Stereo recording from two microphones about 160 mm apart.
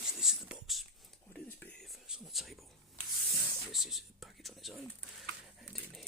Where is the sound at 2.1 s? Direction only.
Centre (ahead or behind).